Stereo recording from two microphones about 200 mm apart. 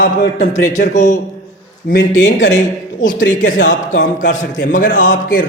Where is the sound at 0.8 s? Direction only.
40° left (ahead or behind).